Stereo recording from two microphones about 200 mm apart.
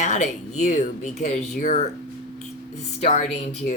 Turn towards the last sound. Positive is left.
turn(degrees=35)  # may be behind; listen again after turning